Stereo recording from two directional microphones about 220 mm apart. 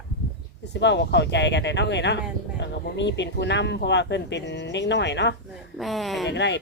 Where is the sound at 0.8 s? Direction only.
50° left (ahead or behind).